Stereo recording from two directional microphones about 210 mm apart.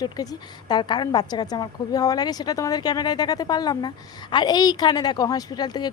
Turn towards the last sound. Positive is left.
turn(degrees=20)  # may be behind; listen again after turning